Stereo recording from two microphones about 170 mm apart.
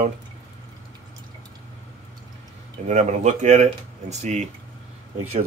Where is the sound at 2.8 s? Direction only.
45° right (ahead or behind).